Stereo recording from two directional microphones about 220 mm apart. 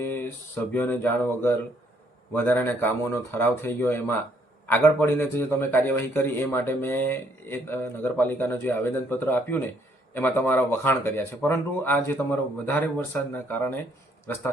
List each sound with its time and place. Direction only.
0.0 s a man's voice: 10° left (ahead or behind)